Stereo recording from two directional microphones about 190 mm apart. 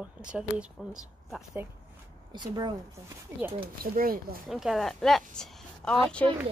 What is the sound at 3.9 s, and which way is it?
Speech, 50° right (ahead or behind).